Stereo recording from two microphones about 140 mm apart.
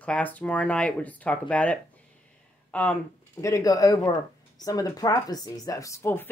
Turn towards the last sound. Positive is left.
turn(degrees=15)  # may be behind; listen again after turning